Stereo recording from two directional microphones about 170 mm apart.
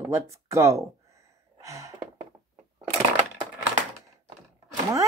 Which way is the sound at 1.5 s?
20° right (ahead or behind).